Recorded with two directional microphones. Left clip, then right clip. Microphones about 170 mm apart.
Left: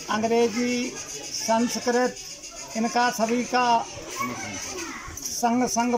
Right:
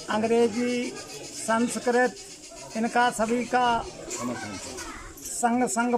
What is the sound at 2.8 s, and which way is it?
Speech, 5° left (ahead or behind).